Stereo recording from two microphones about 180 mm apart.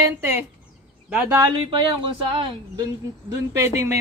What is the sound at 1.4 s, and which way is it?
Speech, 30° right (ahead or behind).